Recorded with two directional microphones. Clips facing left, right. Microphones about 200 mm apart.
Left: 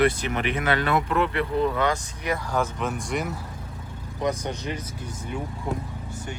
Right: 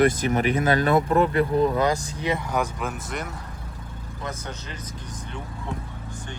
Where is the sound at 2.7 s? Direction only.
5° right (ahead or behind).